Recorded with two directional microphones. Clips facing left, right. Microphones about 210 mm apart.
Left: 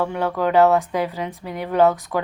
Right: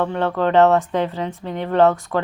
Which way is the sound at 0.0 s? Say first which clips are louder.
Right 2 dB; 10° left (ahead or behind).